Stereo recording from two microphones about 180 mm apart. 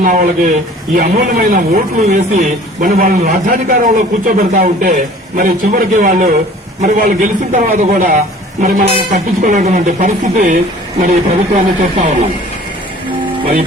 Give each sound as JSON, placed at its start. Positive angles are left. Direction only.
{"t": 0.0, "sound": "a man's voice", "side_deg": -50}